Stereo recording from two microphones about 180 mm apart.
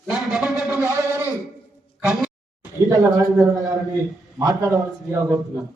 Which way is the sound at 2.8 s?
20° right (ahead or behind).